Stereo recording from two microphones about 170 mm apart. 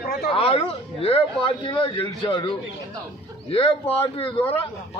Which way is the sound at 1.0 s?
35° left (ahead or behind).